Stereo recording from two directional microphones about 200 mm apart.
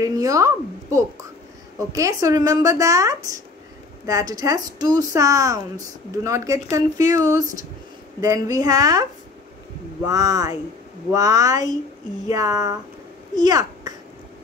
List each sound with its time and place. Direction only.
0.0 s speech: 15° right (ahead or behind)
10.0 s a child's voice: 20° right (ahead or behind)